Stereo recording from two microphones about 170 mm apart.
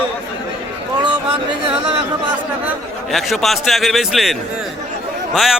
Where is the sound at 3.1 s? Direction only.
Centre (ahead or behind).